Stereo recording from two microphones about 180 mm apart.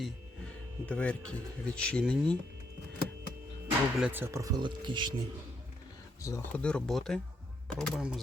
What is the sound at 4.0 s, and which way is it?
Speech, 10° right (ahead or behind).